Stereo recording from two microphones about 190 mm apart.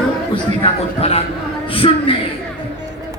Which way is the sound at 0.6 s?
30° left (ahead or behind).